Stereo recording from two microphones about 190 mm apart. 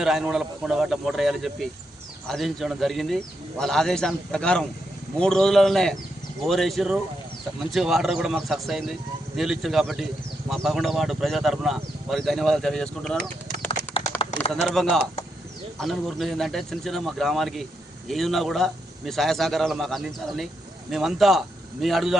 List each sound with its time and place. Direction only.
0.0 s speech: centre (ahead or behind)
13.7 s a sound: 30° left (ahead or behind)
14.7 s speech: centre (ahead or behind)